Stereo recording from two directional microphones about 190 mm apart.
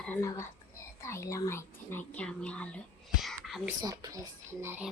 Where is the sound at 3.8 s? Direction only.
20° right (ahead or behind).